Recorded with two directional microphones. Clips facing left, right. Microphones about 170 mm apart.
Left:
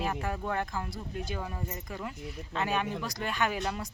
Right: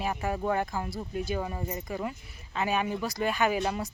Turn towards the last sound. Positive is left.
turn(degrees=-5)  # may be behind; listen again after turning